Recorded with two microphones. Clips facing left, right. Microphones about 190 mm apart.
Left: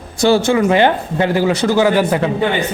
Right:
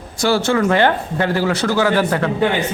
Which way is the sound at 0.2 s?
20° left (ahead or behind).